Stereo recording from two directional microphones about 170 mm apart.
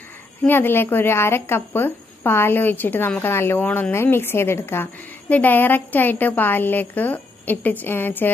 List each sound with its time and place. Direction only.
0.4 s speech: 10° left (ahead or behind)